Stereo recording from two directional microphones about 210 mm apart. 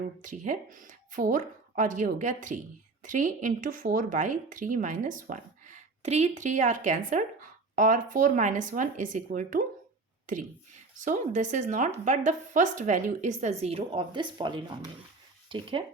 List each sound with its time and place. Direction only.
0.2 s speech: 40° right (ahead or behind)
11.0 s speech: 35° right (ahead or behind)